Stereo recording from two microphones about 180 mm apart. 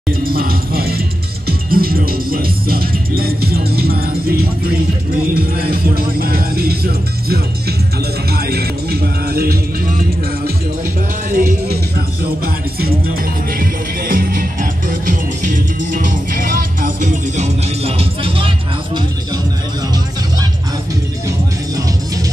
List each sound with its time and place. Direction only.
0.2 s speech: 55° right (ahead or behind)
1.7 s music: 55° right (ahead or behind)
13.6 s music: 50° right (ahead or behind); by 18.5 s 30° right (ahead or behind)